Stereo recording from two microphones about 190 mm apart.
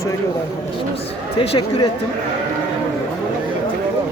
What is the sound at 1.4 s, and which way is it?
Speech, 30° left (ahead or behind).